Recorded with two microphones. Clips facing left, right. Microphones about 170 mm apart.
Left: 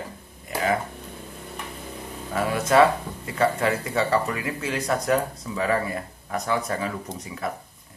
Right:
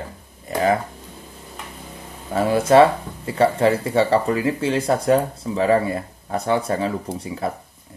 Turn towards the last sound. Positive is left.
turn(degrees=-30)  # may be behind; listen again after turning